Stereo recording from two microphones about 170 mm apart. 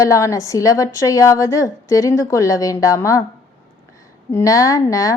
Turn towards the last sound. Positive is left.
turn(degrees=20)  # may be behind; listen again after turning